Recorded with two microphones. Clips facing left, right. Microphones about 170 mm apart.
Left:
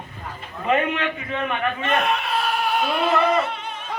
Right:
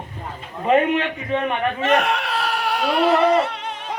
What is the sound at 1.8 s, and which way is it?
Chuckle, 85° right.